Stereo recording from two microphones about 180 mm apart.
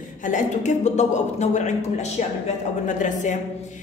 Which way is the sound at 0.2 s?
45° left (ahead or behind).